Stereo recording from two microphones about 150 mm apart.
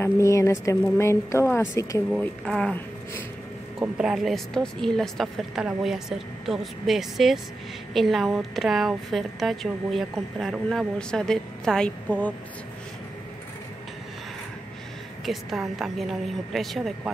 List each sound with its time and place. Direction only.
0.0 s speech: 20° left (ahead or behind)
2.0 s speech: 5° left (ahead or behind)
3.8 s a woman's voice: 5° right (ahead or behind)
15.2 s a woman's voice: 5° right (ahead or behind)